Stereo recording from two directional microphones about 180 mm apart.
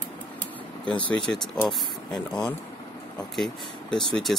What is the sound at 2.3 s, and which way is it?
Speech, 20° left (ahead or behind).